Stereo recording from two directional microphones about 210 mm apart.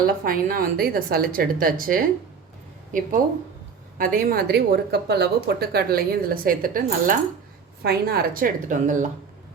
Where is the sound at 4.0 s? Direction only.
40° right (ahead or behind).